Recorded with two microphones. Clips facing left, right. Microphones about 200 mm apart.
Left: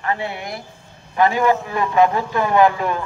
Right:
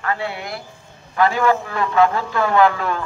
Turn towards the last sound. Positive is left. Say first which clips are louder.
# left 1 dB
turn(degrees=15)  # may be behind; listen again after turning